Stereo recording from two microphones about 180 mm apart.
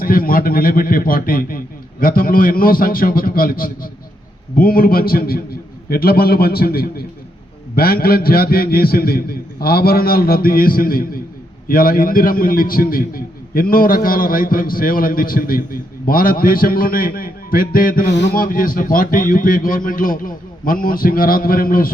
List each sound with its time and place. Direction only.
0.0 s a man's voice: 55° left (ahead or behind)
18.1 s a man's voice: 75° left (ahead or behind)
18.3 s a man's voice: 50° left (ahead or behind)